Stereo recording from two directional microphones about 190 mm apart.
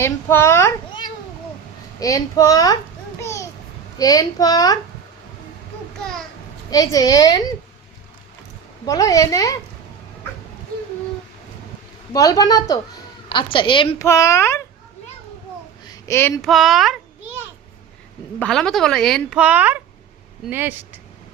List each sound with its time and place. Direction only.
0.0 s a child's voice: 15° left (ahead or behind)
3.2 s a sound: 15° left (ahead or behind)
3.9 s a child's voice: 20° left (ahead or behind)
6.0 s speech: 5° left (ahead or behind)
6.7 s a child's voice: 20° left (ahead or behind)
8.9 s a woman's voice: 20° left (ahead or behind)
12.1 s a child's voice: 15° left (ahead or behind)
14.0 s a woman's voice: 15° left (ahead or behind)
15.8 s a sound: 20° left (ahead or behind)
16.4 s speech: centre (ahead or behind)
18.3 s speech: 5° left (ahead or behind)